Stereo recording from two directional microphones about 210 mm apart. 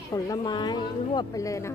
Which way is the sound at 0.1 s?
20° left (ahead or behind).